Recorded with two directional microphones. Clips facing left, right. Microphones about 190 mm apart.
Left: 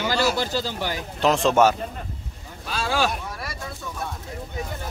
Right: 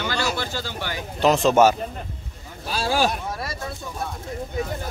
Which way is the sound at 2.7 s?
35° right (ahead or behind).